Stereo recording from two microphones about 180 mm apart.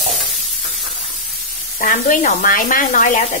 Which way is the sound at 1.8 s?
45° left (ahead or behind).